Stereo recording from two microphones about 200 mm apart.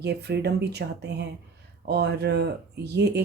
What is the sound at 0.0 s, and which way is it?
Speech, 55° right (ahead or behind).